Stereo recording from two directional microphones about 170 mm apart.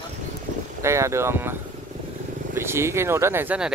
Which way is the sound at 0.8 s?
15° right (ahead or behind).